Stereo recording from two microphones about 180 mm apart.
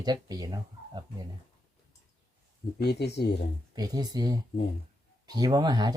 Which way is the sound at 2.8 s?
65° left (ahead or behind).